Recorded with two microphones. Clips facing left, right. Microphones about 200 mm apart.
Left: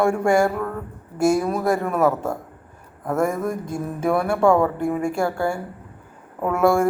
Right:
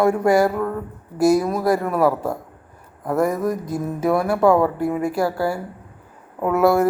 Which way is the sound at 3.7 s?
5° right (ahead or behind).